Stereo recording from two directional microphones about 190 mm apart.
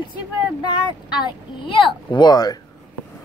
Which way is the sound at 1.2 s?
25° left (ahead or behind).